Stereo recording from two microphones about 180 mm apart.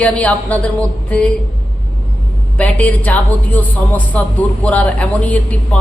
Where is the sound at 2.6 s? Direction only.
10° left (ahead or behind).